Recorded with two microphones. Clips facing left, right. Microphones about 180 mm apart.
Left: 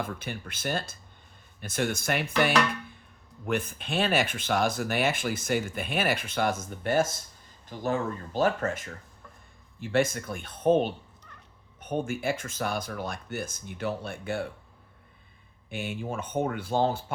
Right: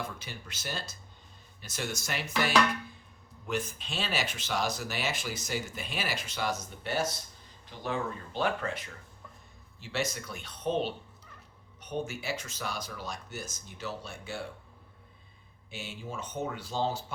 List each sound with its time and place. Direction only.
0.0 s speech: 55° left (ahead or behind)
15.7 s speech: 55° left (ahead or behind)